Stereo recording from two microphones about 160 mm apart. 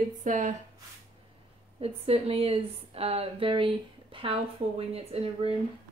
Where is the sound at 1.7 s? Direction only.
40° right (ahead or behind).